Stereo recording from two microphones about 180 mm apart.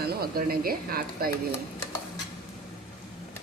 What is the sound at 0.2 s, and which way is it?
Speech, 55° right (ahead or behind).